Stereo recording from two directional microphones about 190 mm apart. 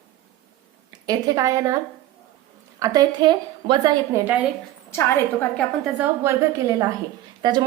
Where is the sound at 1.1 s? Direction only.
20° right (ahead or behind).